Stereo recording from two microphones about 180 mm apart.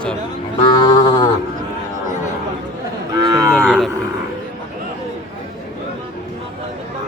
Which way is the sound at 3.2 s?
20° right (ahead or behind).